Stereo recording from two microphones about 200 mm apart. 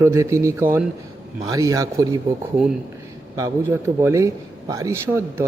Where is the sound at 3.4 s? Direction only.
10° right (ahead or behind).